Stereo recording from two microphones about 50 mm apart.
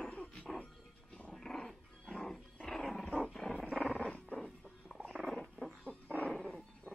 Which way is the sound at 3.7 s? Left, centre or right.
Centre.